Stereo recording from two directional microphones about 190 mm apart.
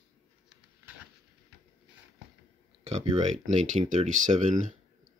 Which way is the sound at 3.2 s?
40° right (ahead or behind).